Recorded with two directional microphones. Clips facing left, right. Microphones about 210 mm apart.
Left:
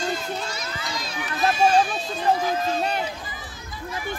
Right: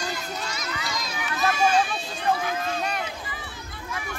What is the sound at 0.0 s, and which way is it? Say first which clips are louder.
Run: left 4 dB; 30° left (ahead or behind).